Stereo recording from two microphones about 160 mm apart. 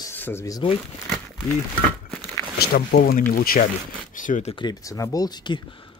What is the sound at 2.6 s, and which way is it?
Speech, 75° left (ahead or behind).